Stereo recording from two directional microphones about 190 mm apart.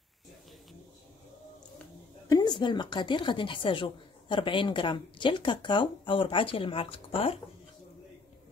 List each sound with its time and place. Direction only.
2.2 s a woman's voice: 20° left (ahead or behind)